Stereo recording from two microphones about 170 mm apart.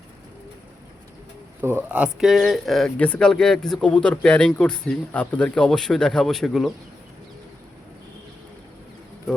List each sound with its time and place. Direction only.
1.6 s speech: 10° right (ahead or behind)